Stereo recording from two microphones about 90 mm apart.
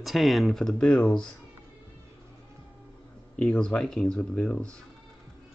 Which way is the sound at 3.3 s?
10° left (ahead or behind).